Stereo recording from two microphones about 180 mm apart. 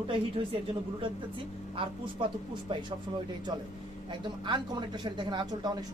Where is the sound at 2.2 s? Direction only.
30° right (ahead or behind).